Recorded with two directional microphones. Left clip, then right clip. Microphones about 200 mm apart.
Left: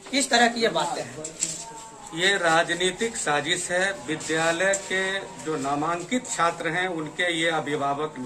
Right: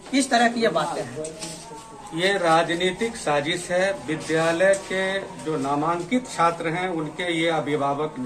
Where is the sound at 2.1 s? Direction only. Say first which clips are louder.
Right 1 dB; centre (ahead or behind).